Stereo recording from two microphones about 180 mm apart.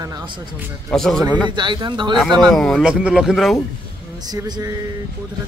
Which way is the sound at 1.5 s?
25° right (ahead or behind).